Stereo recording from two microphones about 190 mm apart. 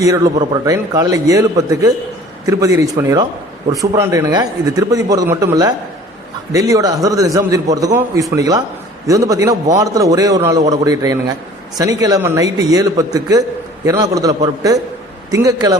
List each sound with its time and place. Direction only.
0.0 s a man's voice: 20° right (ahead or behind)